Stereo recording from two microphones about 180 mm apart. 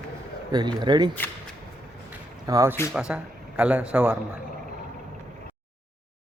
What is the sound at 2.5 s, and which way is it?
Speech, 20° right (ahead or behind).